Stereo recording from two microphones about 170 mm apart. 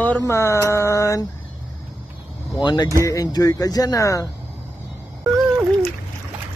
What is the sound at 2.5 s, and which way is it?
Speech, 25° left (ahead or behind).